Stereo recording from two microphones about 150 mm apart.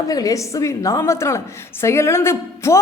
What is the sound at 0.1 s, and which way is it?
A woman's voice, 25° left (ahead or behind).